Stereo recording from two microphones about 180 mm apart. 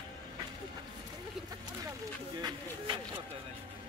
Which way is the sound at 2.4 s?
25° right (ahead or behind).